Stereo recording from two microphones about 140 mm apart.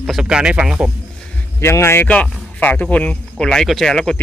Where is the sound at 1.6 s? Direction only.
20° left (ahead or behind).